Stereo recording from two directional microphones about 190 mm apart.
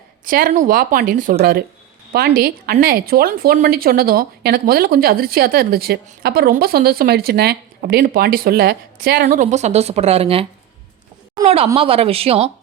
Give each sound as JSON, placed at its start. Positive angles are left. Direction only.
{"t": 0.3, "sound": "speech", "side_deg": -45}
{"t": 11.4, "sound": "speech", "side_deg": -30}